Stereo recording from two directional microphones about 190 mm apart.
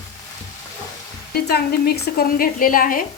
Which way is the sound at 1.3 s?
55° left (ahead or behind).